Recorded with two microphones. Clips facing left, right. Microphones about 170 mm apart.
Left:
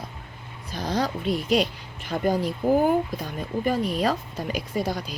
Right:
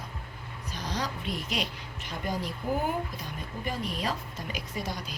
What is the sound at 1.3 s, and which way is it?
Speech, 30° left (ahead or behind).